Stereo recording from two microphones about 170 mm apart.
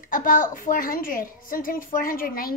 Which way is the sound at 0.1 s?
55° left (ahead or behind).